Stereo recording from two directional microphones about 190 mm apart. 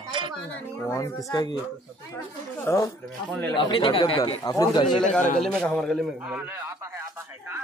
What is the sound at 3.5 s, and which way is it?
Speech, 25° left (ahead or behind).